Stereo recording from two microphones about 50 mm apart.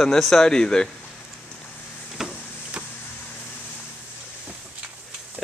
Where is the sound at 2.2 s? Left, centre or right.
Centre.